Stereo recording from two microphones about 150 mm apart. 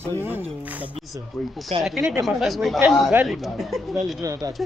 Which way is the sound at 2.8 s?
15° right (ahead or behind).